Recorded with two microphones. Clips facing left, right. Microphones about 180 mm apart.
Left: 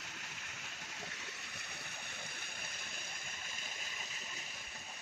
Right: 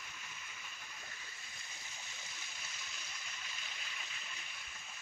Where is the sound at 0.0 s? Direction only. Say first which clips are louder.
Left 2 dB; 75° left (ahead or behind); by 4.5 s 40° left (ahead or behind).